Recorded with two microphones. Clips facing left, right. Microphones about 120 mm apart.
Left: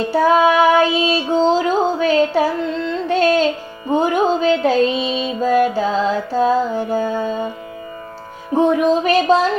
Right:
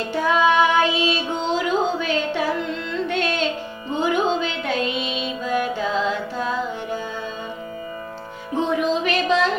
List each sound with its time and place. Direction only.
0.1 s female singing: 40° left (ahead or behind)
3.9 s music: 45° left (ahead or behind)
8.5 s music: 50° left (ahead or behind)